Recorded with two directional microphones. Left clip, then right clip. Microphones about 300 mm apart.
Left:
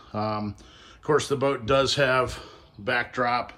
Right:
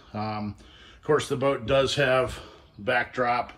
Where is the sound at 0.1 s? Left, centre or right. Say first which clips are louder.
Left 3 dB; centre.